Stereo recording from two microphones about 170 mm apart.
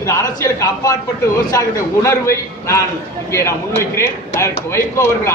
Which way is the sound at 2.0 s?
15° left (ahead or behind).